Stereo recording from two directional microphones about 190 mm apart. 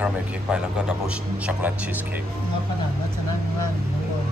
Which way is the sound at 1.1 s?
5° right (ahead or behind).